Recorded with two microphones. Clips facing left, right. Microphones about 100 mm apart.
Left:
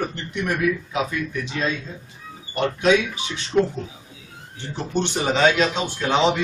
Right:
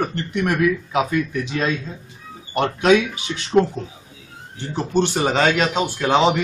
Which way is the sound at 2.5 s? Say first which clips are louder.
Right 3 dB; 60° right (ahead or behind).